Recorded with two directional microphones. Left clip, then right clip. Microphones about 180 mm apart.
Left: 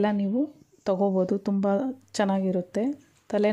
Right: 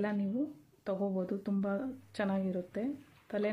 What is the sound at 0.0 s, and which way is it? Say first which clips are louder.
Speech: left 10 dB; 45° left (ahead or behind).